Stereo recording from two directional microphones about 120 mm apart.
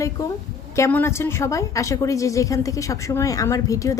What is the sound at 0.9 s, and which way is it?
A woman's voice, 15° left (ahead or behind).